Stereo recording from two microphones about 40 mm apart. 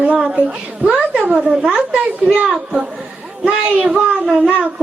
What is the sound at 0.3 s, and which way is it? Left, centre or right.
Speech, right.